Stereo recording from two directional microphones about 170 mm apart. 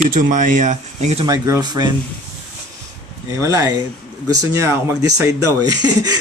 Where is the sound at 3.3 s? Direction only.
20° right (ahead or behind).